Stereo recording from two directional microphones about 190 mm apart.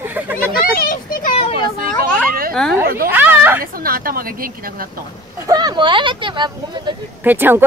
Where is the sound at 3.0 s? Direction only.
10° right (ahead or behind).